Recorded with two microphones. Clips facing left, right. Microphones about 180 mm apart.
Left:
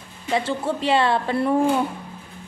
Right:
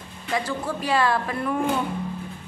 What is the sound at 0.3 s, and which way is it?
A woman's voice, 25° left (ahead or behind).